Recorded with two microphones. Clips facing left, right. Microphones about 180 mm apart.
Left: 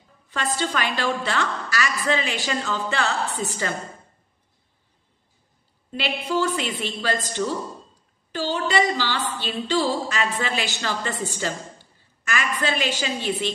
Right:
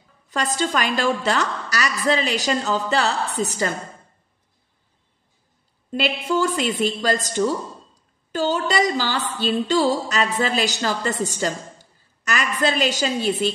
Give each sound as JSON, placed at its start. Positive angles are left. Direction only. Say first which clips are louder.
{"t": 0.3, "sound": "a woman's voice", "louder": "right 3 dB", "side_deg": -40}
{"t": 5.9, "sound": "a woman's voice", "louder": "right 4 dB", "side_deg": -45}